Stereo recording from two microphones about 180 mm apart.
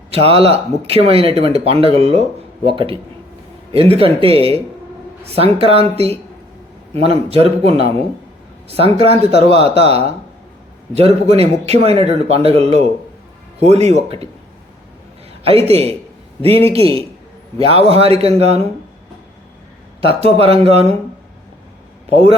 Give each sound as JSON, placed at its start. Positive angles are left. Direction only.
{"t": 0.1, "sound": "speech", "side_deg": -30}
{"t": 15.4, "sound": "speech", "side_deg": -35}
{"t": 20.0, "sound": "speech", "side_deg": -30}